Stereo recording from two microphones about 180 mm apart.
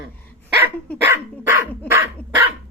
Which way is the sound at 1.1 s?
15° right (ahead or behind).